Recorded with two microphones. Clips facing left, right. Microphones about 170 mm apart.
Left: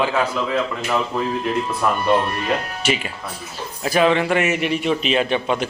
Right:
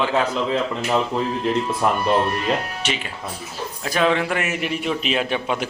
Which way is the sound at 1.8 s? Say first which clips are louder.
Even; 25° right (ahead or behind).